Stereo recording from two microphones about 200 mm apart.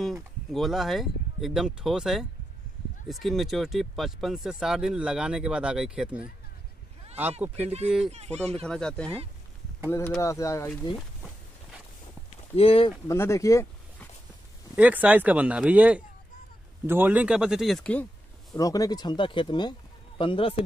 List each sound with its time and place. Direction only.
0.0 s speech: centre (ahead or behind)
7.6 s speech: 30° right (ahead or behind)
8.6 s speech: 5° left (ahead or behind)
12.5 s speech: 30° left (ahead or behind)
13.1 s speech: 15° left (ahead or behind)
14.8 s speech: 10° right (ahead or behind)
18.6 s speech: 20° left (ahead or behind)